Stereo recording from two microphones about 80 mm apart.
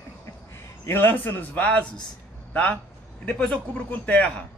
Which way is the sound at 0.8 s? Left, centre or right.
Left.